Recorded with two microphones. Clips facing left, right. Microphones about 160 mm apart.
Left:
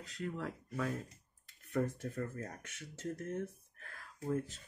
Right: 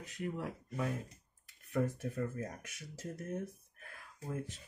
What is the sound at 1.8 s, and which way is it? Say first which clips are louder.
Speech: right 1 dB; 15° right (ahead or behind).